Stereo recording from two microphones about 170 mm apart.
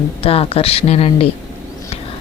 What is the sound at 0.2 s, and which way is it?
Speech, 35° left (ahead or behind).